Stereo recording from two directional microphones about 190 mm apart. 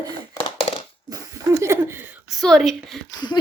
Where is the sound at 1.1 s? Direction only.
15° right (ahead or behind).